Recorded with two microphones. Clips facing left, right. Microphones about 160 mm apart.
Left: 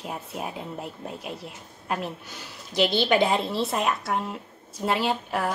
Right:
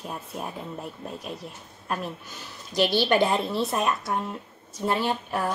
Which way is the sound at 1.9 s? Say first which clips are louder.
Left 1 dB; 80° left.